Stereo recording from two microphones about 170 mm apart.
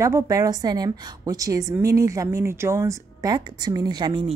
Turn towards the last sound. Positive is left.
turn(degrees=-25)  # may be behind; listen again after turning